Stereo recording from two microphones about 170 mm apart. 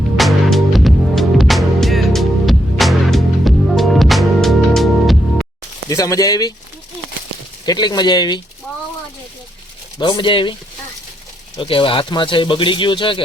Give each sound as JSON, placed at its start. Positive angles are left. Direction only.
{"t": 0.2, "sound": "music", "side_deg": 0}
{"t": 5.9, "sound": "speech", "side_deg": 20}
{"t": 7.6, "sound": "speech", "side_deg": 25}
{"t": 10.0, "sound": "speech", "side_deg": 25}
{"t": 11.5, "sound": "speech", "side_deg": 25}